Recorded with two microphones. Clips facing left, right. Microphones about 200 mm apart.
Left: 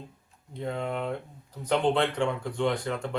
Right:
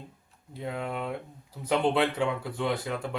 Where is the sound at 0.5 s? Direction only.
5° right (ahead or behind).